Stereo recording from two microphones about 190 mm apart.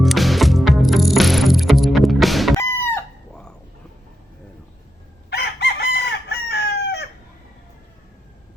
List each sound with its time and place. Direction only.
0.0 s music: centre (ahead or behind)
2.6 s chicken: 10° left (ahead or behind)
5.3 s chicken: 60° left (ahead or behind)